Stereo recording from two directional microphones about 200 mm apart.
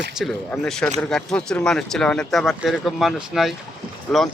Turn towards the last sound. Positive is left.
turn(degrees=0)  # may be behind; listen again after turning